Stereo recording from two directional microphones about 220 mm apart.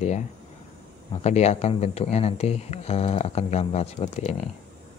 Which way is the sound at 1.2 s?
30° left (ahead or behind).